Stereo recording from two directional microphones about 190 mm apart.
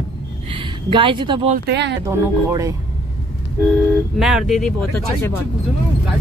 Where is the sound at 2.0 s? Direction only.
15° right (ahead or behind).